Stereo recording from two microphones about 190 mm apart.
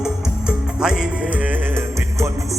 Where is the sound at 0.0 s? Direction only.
5° right (ahead or behind).